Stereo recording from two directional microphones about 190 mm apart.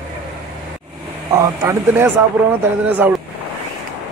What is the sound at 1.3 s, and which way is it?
A man's voice, 15° right (ahead or behind).